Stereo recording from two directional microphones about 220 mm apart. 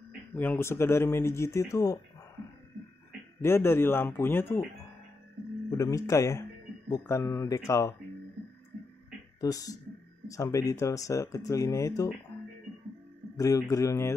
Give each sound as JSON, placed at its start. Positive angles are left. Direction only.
{"t": 0.3, "sound": "speech", "side_deg": 10}
{"t": 3.4, "sound": "speech", "side_deg": 10}
{"t": 5.7, "sound": "speech", "side_deg": 15}
{"t": 9.4, "sound": "speech", "side_deg": 15}
{"t": 13.4, "sound": "speech", "side_deg": 15}